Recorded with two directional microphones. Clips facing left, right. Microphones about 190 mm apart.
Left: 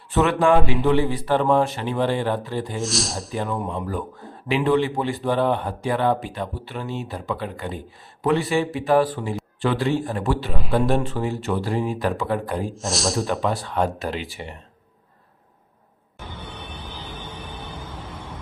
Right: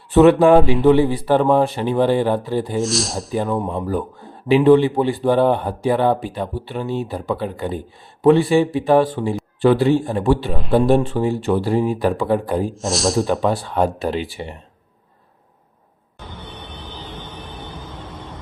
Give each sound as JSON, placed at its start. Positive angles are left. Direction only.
{"t": 0.1, "sound": "speech", "side_deg": -35}
{"t": 2.7, "sound": "a man's voice", "side_deg": 0}
{"t": 3.7, "sound": "speech", "side_deg": -35}
{"t": 9.6, "sound": "a man's voice", "side_deg": -35}
{"t": 12.6, "sound": "a man's voice", "side_deg": 0}
{"t": 13.5, "sound": "speech", "side_deg": -30}
{"t": 17.1, "sound": "music", "side_deg": 10}
{"t": 17.7, "sound": "vehicle", "side_deg": 10}